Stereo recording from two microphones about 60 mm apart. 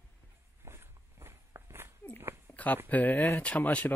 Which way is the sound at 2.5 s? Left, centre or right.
Left.